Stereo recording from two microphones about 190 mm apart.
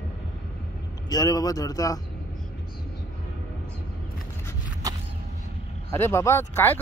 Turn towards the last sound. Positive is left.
turn(degrees=10)  # may be behind; listen again after turning